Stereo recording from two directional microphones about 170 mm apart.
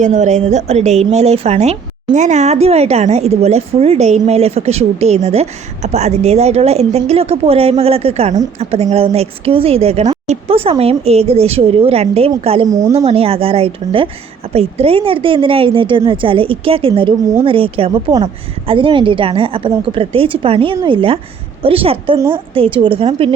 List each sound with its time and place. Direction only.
0.0 s a woman's voice: 45° right (ahead or behind)
12.6 s a woman's voice: 20° right (ahead or behind)
13.1 s a woman's voice: 35° right (ahead or behind)